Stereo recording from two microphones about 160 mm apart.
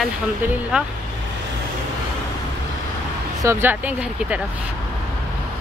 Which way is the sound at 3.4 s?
15° right (ahead or behind).